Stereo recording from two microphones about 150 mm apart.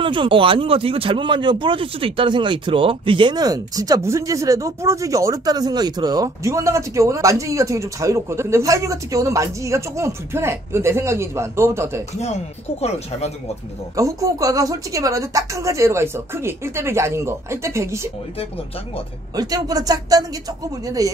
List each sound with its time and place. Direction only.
0.0 s speech: 35° right (ahead or behind); by 12.0 s 20° right (ahead or behind)
13.9 s speech: 20° right (ahead or behind)
19.3 s speech: 25° right (ahead or behind)